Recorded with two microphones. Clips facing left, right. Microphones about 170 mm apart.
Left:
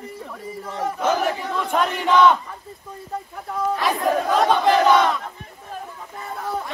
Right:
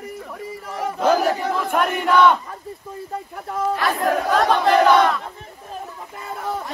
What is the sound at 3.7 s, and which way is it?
Crowd, centre (ahead or behind).